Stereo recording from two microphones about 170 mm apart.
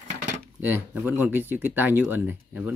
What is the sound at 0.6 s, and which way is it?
Speech, 10° right (ahead or behind).